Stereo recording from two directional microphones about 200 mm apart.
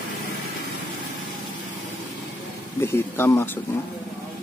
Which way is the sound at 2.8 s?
10° left (ahead or behind).